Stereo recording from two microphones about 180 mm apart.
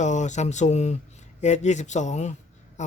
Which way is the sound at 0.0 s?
40° left (ahead or behind).